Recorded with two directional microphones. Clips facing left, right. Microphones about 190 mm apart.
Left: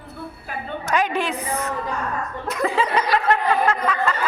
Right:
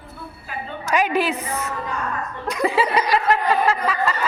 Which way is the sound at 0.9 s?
10° right (ahead or behind).